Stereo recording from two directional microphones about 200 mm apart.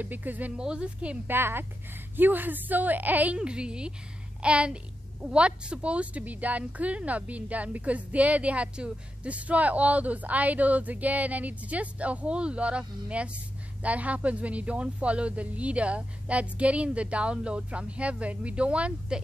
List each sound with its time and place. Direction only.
0.0 s a woman's voice: 10° right (ahead or behind)